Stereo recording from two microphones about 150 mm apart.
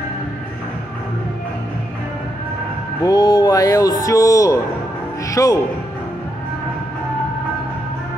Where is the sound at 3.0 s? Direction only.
25° left (ahead or behind).